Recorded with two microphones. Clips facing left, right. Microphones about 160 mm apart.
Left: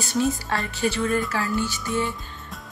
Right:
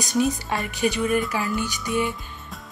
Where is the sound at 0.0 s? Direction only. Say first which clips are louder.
Right 1 dB; 15° right (ahead or behind).